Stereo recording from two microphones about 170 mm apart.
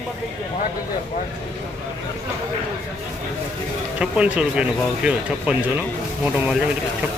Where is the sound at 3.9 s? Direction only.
5° right (ahead or behind).